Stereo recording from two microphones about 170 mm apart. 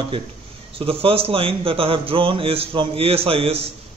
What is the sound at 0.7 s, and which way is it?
A man's voice, 35° right (ahead or behind).